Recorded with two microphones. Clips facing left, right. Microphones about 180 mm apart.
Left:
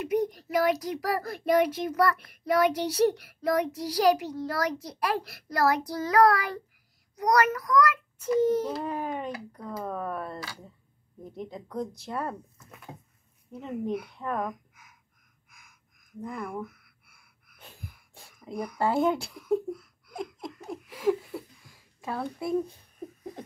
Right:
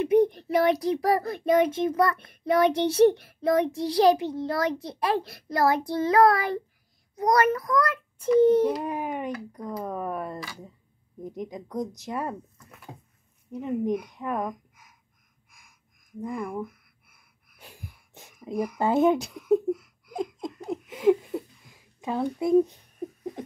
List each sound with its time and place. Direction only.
0.1 s a child's voice: 25° right (ahead or behind)
8.6 s speech: 15° right (ahead or behind)
13.5 s speech: 15° right (ahead or behind)
16.2 s speech: 10° right (ahead or behind)
17.6 s wheeze: 15° right (ahead or behind)
18.5 s speech: 10° right (ahead or behind)
20.2 s giggle: 20° right (ahead or behind)
22.0 s a child's voice: 20° right (ahead or behind)